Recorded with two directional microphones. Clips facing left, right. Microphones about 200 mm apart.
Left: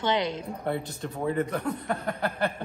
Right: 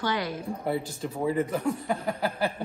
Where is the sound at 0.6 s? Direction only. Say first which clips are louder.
Right 1 dB; 5° right (ahead or behind).